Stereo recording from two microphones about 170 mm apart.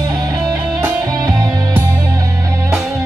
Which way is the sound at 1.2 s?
20° right (ahead or behind).